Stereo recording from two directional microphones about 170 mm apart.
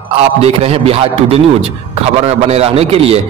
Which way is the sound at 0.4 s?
35° right (ahead or behind).